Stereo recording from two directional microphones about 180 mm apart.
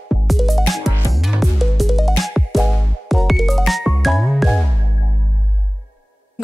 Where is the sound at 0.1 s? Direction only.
Centre (ahead or behind).